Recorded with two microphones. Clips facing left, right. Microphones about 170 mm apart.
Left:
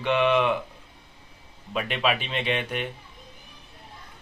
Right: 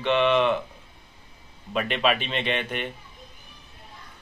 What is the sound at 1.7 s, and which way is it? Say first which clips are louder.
A man's voice: right 2 dB; centre (ahead or behind).